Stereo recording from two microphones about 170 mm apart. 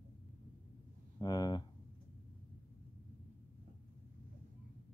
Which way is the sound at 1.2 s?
25° left (ahead or behind).